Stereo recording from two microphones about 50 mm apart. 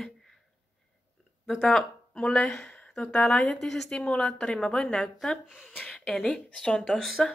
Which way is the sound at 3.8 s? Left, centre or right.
Left.